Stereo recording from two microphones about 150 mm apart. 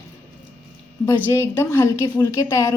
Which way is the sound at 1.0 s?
15° left (ahead or behind).